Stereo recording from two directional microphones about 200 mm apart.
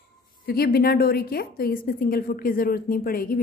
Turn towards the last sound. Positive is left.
turn(degrees=45)  # may be behind; listen again after turning